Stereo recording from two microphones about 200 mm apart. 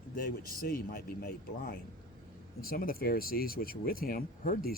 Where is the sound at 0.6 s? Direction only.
50° left (ahead or behind).